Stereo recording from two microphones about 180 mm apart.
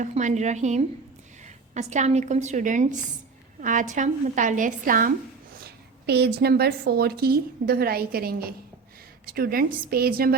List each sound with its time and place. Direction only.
0.0 s a woman's voice: 40° right (ahead or behind)
6.1 s a woman's voice: 60° right (ahead or behind)